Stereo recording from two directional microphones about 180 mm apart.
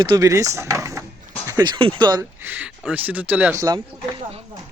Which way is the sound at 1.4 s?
20° right (ahead or behind).